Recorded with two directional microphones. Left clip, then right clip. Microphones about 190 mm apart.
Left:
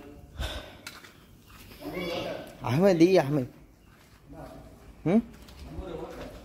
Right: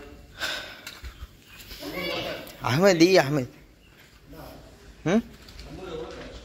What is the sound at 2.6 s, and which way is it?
Speech, centre (ahead or behind).